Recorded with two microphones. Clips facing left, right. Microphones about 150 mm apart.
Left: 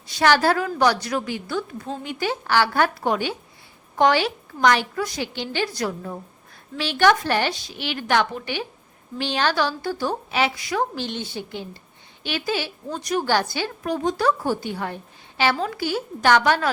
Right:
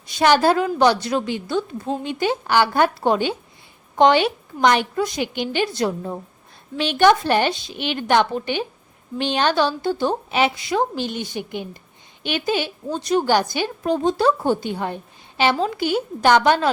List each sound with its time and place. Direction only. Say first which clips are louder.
0.1 s a woman's voice: right 3 dB; 20° right (ahead or behind)